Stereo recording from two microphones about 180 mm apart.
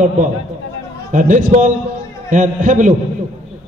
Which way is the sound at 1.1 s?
45° right (ahead or behind).